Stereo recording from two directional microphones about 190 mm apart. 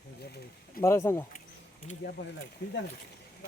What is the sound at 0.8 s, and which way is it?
Speech, 15° left (ahead or behind).